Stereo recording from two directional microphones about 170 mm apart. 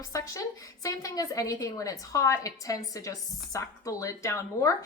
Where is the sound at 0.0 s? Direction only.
20° left (ahead or behind).